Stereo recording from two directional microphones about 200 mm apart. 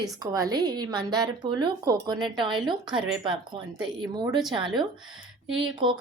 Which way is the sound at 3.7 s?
5° right (ahead or behind).